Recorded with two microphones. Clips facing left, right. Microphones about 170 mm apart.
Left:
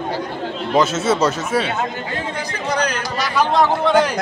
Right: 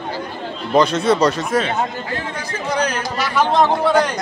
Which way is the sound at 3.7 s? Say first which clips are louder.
Even; centre (ahead or behind).